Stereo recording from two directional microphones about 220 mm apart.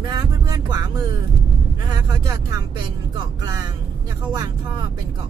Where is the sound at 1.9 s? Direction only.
20° right (ahead or behind).